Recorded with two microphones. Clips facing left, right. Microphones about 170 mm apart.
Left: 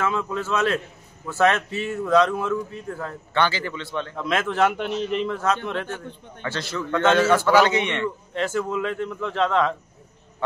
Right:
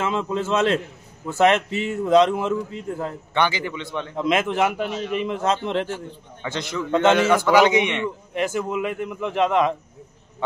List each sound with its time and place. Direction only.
0.0 s a man's voice: 25° right (ahead or behind)
6.4 s a man's voice: 15° right (ahead or behind)